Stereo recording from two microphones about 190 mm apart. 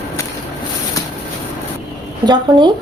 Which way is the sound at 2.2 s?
25° right (ahead or behind).